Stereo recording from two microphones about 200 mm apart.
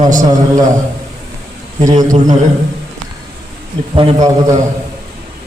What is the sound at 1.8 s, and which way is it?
Speech, 35° right (ahead or behind).